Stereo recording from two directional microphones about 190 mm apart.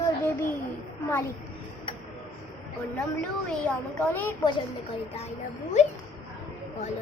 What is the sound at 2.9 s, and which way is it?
A woman's voice, 5° left (ahead or behind).